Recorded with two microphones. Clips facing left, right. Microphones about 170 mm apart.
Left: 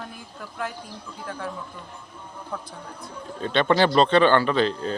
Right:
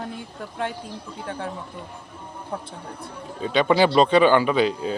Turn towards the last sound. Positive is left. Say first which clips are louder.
# right 2 dB
turn(degrees=-10)  # may be behind; listen again after turning